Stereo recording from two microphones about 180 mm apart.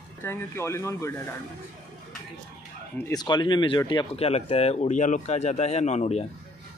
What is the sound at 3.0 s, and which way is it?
Speech, 20° left (ahead or behind).